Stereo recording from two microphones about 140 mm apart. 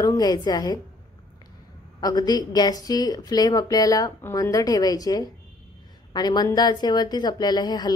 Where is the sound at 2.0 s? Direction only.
30° left (ahead or behind).